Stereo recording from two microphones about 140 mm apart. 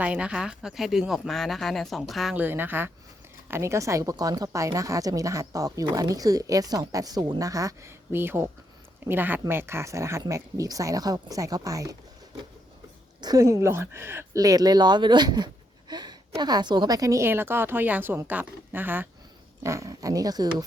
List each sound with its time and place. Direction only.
0.0 s speech: 10° right (ahead or behind)
2.3 s a woman's voice: 15° right (ahead or behind)
13.2 s speech: 25° right (ahead or behind)
15.9 s a sound: 30° right (ahead or behind)
16.4 s a woman's voice: 30° right (ahead or behind)